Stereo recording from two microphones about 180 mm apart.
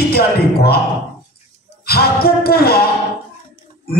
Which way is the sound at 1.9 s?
60° left (ahead or behind).